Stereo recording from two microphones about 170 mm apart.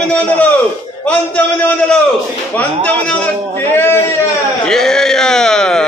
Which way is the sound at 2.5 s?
10° left (ahead or behind).